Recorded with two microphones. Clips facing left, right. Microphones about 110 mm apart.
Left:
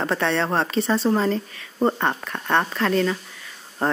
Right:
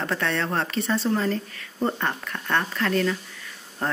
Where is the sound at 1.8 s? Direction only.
35° left (ahead or behind).